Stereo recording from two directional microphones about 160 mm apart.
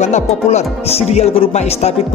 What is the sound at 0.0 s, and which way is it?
Speech, 45° left (ahead or behind).